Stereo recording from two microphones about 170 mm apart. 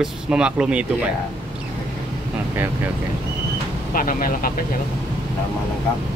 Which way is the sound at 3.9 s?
55° left (ahead or behind).